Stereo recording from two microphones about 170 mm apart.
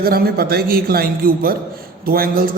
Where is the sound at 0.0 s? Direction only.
65° right (ahead or behind).